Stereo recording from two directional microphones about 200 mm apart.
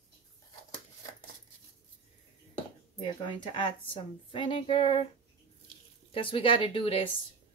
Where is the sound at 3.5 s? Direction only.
25° left (ahead or behind).